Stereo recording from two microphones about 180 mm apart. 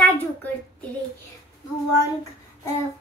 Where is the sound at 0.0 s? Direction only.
10° left (ahead or behind).